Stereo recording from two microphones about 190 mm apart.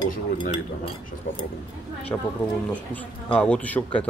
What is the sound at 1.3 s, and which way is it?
Speech, 75° left (ahead or behind).